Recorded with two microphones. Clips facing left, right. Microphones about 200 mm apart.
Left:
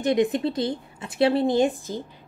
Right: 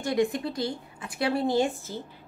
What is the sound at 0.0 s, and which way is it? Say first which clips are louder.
A woman's voice: left 5 dB; 20° left (ahead or behind).